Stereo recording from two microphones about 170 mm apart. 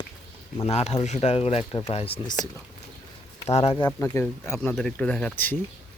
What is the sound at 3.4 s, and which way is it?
Speech, 40° left (ahead or behind).